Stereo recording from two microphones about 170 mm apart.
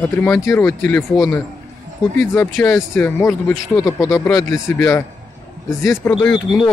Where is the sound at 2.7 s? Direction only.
20° left (ahead or behind).